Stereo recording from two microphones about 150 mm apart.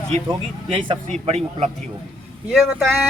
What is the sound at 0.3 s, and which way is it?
A man's voice, 35° right (ahead or behind).